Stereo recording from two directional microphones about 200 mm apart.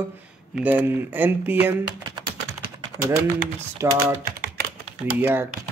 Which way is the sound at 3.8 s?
10° right (ahead or behind).